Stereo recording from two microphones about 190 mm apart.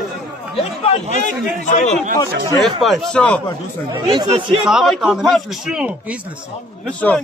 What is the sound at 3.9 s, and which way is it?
Speech, 25° right (ahead or behind).